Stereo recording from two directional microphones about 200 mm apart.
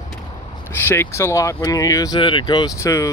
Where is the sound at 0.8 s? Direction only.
10° left (ahead or behind).